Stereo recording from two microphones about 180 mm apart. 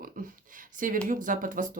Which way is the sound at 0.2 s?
50° right (ahead or behind).